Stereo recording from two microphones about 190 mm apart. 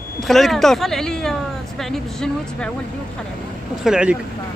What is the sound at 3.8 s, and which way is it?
Speech, 5° right (ahead or behind).